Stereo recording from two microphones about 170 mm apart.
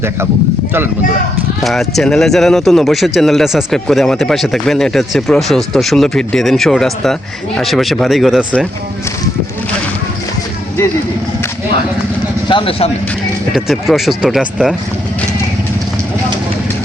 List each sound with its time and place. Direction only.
1.6 s speech: centre (ahead or behind)
12.5 s speech: 30° left (ahead or behind)
13.5 s speech: centre (ahead or behind)